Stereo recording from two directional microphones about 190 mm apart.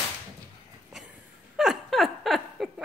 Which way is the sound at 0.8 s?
5° right (ahead or behind).